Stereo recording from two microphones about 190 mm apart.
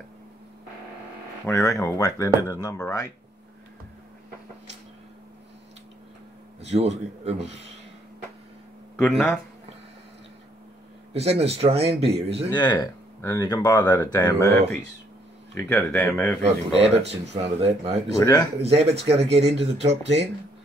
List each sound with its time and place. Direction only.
1.4 s speech: 15° left (ahead or behind)
6.6 s speech: 35° right (ahead or behind)
8.9 s speech: 5° left (ahead or behind)
11.1 s speech: 35° right (ahead or behind)
12.5 s speech: 20° left (ahead or behind)
15.5 s speech: 10° left (ahead or behind)
16.4 s speech: 35° right (ahead or behind)